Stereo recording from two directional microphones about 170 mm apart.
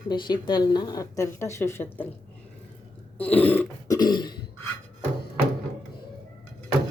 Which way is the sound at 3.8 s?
25° left (ahead or behind).